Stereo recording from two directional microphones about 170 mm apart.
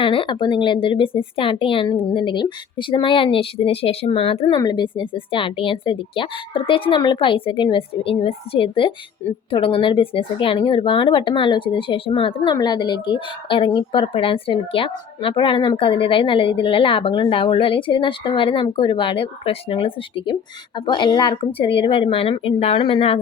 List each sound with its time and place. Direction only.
0.0 s a woman's voice: 30° left (ahead or behind)